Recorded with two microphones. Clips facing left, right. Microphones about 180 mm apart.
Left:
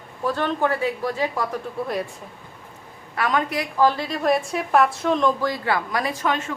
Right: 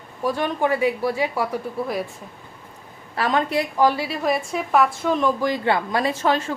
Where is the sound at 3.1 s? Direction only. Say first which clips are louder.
Right 2 dB; 30° right (ahead or behind).